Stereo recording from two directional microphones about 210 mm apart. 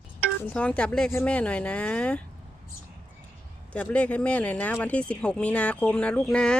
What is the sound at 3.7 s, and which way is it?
Speech, 5° left (ahead or behind).